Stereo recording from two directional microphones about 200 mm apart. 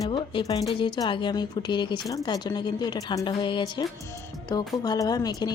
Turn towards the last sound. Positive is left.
turn(degrees=20)  # may be behind; listen again after turning